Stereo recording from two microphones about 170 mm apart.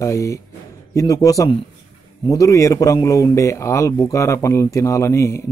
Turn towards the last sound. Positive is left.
turn(degrees=15)  # may be behind; listen again after turning